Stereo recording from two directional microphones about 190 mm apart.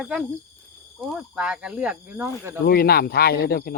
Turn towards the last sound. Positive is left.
turn(degrees=55)  # may be behind; listen again after turning